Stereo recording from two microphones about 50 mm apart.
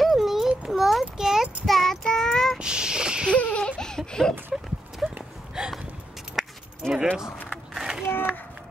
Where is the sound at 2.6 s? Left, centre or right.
Centre.